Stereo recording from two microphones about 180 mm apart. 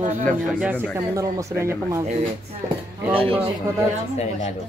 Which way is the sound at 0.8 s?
15° right (ahead or behind).